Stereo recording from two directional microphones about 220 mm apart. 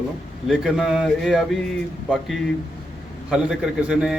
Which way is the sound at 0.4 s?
Centre (ahead or behind).